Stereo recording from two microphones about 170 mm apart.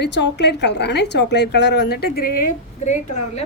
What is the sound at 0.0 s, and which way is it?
A woman's voice, 90° left.